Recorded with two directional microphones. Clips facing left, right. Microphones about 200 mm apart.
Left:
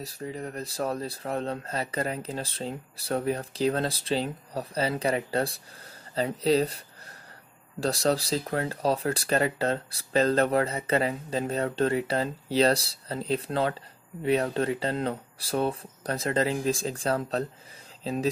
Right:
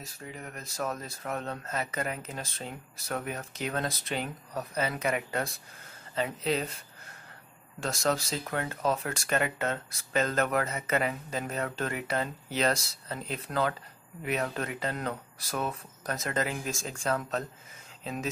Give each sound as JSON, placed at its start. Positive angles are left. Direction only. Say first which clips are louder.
{"t": 0.0, "sound": "speech", "louder": "left 8 dB", "side_deg": 35}